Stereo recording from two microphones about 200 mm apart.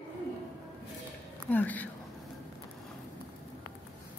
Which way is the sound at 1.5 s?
10° left (ahead or behind).